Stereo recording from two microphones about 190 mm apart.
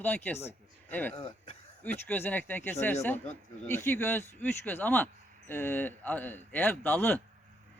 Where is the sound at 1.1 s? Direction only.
30° left (ahead or behind).